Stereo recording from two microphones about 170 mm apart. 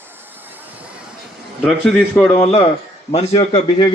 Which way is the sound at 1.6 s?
5° left (ahead or behind).